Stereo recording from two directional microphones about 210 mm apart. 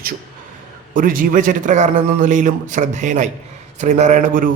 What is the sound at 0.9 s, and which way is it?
A man's voice, 40° right (ahead or behind).